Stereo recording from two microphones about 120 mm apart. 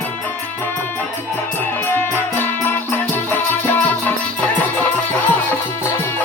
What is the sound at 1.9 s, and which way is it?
Music, 20° left (ahead or behind).